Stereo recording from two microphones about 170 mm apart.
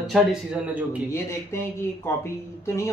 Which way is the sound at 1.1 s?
15° left (ahead or behind).